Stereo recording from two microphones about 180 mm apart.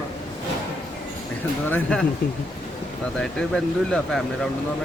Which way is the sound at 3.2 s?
5° left (ahead or behind).